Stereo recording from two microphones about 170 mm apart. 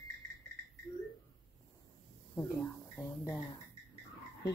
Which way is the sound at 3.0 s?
15° left (ahead or behind).